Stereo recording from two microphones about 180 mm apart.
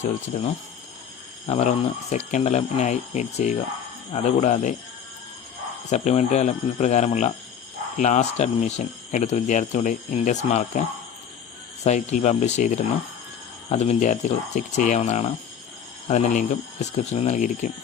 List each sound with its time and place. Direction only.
1.5 s speech: 35° left (ahead or behind)
5.9 s speech: 40° left (ahead or behind)